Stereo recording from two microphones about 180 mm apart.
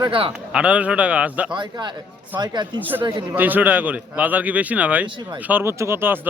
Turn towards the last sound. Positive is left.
turn(degrees=-10)  # may be behind; listen again after turning